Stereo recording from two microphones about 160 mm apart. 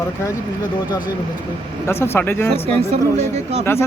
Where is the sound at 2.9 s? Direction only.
40° right (ahead or behind).